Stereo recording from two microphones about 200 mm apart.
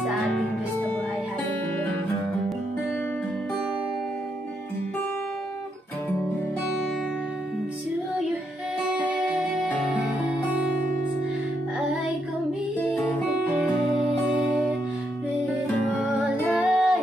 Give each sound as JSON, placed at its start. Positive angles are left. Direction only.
{"t": 0.0, "sound": "music", "side_deg": -5}
{"t": 8.9, "sound": "music", "side_deg": -5}
{"t": 16.2, "sound": "music", "side_deg": -5}